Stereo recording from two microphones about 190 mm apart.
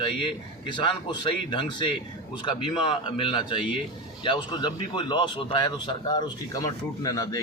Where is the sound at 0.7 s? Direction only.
25° left (ahead or behind).